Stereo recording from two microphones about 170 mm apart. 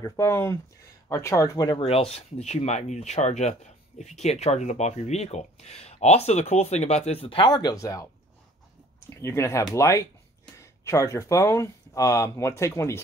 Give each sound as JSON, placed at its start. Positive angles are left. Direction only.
{"t": 0.0, "sound": "speech", "side_deg": 15}
{"t": 9.2, "sound": "speech", "side_deg": 15}